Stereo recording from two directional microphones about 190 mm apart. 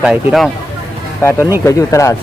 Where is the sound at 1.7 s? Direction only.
15° left (ahead or behind).